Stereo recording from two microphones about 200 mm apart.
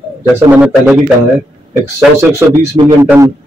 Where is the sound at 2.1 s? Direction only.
15° right (ahead or behind).